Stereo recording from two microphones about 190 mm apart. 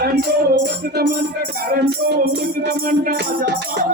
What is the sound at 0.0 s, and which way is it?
Music, 55° right (ahead or behind).